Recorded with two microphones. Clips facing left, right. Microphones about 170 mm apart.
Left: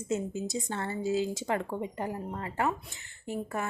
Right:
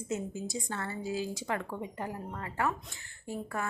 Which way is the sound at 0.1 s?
20° left (ahead or behind).